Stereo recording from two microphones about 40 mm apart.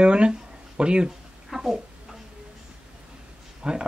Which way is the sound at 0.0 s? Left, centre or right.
Right.